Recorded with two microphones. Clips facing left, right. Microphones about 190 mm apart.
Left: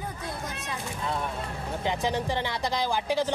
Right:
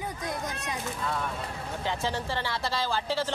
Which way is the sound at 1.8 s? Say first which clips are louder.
Left 3 dB; 15° left (ahead or behind).